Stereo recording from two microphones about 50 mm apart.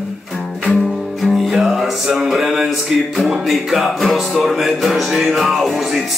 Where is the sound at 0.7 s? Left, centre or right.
Centre.